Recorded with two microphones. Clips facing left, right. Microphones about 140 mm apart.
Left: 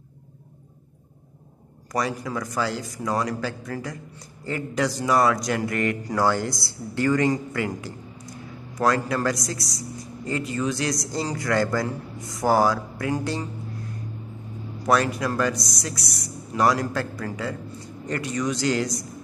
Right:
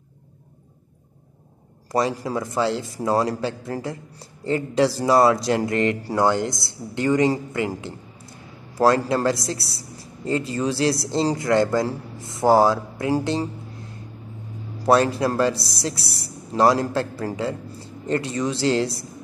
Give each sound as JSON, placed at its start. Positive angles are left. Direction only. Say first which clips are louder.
{"t": 1.9, "sound": "a man's voice", "louder": "right 4 dB", "side_deg": -25}
{"t": 14.8, "sound": "a man's voice", "louder": "right 4 dB", "side_deg": -30}